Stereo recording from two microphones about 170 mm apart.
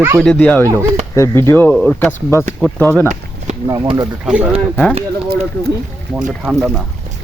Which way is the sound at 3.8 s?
25° right (ahead or behind).